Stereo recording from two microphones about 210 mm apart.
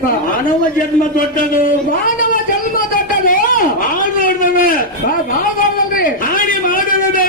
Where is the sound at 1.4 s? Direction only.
40° left (ahead or behind).